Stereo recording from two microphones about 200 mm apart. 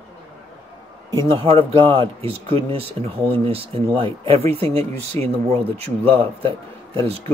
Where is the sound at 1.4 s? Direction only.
25° right (ahead or behind).